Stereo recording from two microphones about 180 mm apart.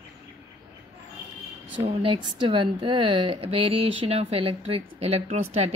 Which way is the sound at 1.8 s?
30° right (ahead or behind).